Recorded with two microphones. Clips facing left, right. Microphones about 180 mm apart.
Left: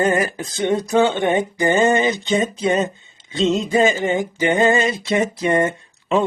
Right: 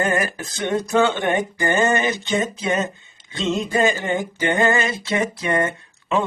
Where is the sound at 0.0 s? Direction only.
20° left (ahead or behind).